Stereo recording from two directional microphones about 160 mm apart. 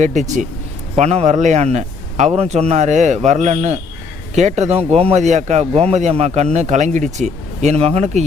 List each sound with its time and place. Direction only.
0.0 s speech: 50° right (ahead or behind)